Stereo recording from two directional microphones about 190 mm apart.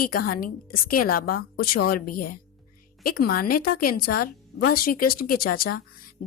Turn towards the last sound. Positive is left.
turn(degrees=50)  # may be behind; listen again after turning